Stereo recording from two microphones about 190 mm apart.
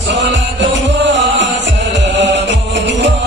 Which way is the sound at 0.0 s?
70° right (ahead or behind).